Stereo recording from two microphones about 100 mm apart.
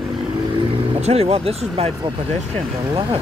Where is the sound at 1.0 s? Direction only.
85° right.